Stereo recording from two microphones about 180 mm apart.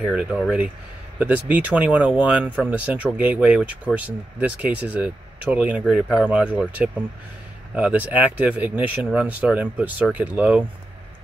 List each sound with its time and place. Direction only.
0.0 s speech: 5° right (ahead or behind)